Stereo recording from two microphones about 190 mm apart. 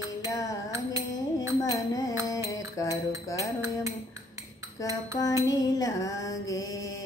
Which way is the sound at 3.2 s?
15° left (ahead or behind).